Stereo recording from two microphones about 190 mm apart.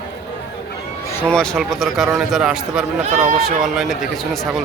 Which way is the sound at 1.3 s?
5° left (ahead or behind).